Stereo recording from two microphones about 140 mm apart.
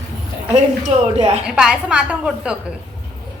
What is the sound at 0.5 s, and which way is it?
Speech, 55° right (ahead or behind).